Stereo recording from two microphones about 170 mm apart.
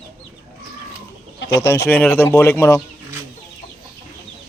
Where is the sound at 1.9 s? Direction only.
15° left (ahead or behind).